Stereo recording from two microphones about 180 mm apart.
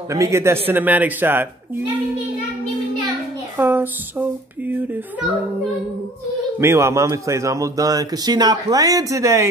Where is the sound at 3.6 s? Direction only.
10° right (ahead or behind).